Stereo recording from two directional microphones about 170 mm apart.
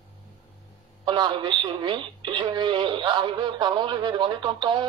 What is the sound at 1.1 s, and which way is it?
Speech, 25° right (ahead or behind).